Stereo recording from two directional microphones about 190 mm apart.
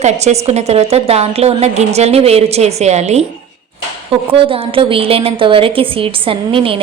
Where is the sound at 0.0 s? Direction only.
35° right (ahead or behind).